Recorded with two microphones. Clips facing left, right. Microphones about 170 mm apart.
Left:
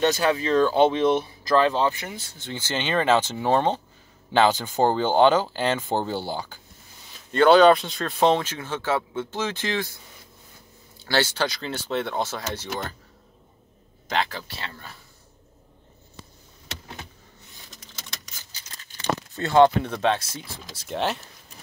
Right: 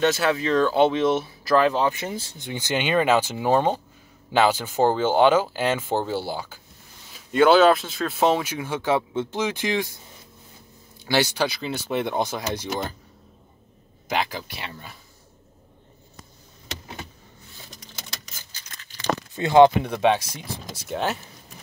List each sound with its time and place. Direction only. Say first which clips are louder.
0.0 s speech: even; centre (ahead or behind)
2.0 s speech: right 6 dB; 30° right (ahead or behind)
2.3 s speech: right 1 dB; 15° right (ahead or behind)
11.1 s speech: right 2 dB; 15° right (ahead or behind)
14.0 s speech: right 1 dB; 10° right (ahead or behind)
19.3 s speech: right 3 dB; 15° right (ahead or behind)
20.7 s speech: even; 5° right (ahead or behind)